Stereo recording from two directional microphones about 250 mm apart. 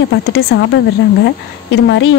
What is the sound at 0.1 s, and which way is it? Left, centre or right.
A woman's voice, left.